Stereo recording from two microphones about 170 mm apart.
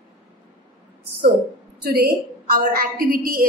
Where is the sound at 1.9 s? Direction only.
60° right (ahead or behind).